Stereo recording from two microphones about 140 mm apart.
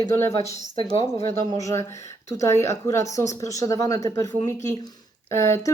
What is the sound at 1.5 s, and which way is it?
Speech, 25° left (ahead or behind).